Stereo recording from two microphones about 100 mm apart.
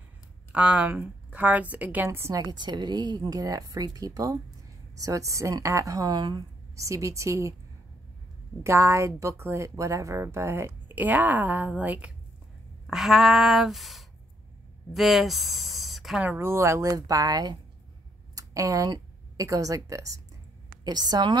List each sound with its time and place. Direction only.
0.5 s a woman's voice: 10° right (ahead or behind)
2.0 s a woman's voice: 30° right (ahead or behind)
6.7 s a woman's voice: 30° right (ahead or behind)
8.6 s speech: 30° right (ahead or behind)
12.8 s speech: centre (ahead or behind)
16.3 s a woman's voice: 25° right (ahead or behind); by 21.4 s 45° right (ahead or behind)